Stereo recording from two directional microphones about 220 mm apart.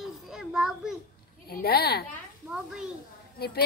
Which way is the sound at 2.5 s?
5° right (ahead or behind).